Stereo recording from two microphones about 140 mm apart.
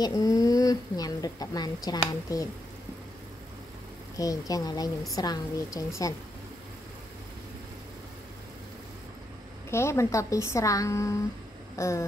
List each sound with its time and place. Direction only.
0.0 s speech: 25° left (ahead or behind)
4.2 s speech: 25° left (ahead or behind)
9.7 s speech: 20° left (ahead or behind)